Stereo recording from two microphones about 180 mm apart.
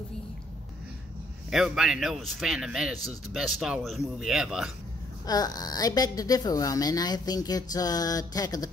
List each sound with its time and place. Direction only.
1.5 s speech: centre (ahead or behind)
5.2 s a woman's voice: 20° left (ahead or behind)